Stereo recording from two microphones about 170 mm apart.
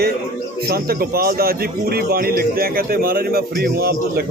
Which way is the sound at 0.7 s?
65° right (ahead or behind).